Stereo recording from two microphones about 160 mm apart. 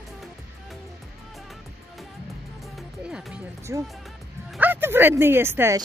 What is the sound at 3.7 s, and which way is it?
Speech, 15° right (ahead or behind).